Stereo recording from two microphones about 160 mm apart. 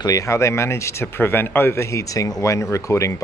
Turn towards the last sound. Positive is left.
turn(degrees=20)  # may be behind; listen again after turning